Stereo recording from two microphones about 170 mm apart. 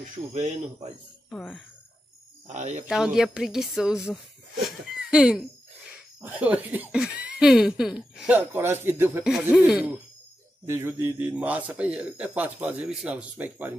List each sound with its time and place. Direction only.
1.3 s speech: 5° left (ahead or behind)
2.4 s speech: 45° right (ahead or behind)
2.9 s speech: 5° right (ahead or behind)
9.2 s speech: 5° right (ahead or behind)